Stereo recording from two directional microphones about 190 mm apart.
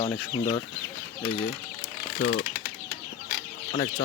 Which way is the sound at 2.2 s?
55° left (ahead or behind).